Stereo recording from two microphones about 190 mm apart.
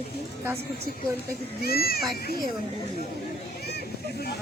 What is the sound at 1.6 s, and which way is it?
Speech, 55° left (ahead or behind).